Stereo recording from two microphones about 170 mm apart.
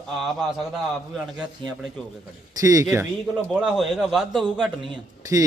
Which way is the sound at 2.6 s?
20° right (ahead or behind).